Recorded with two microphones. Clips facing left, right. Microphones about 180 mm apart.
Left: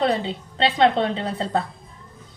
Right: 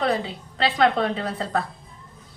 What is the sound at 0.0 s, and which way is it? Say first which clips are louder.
A woman's voice: left 2 dB; 25° left (ahead or behind).